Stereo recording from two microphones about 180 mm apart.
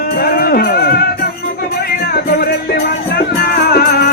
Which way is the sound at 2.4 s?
60° left (ahead or behind).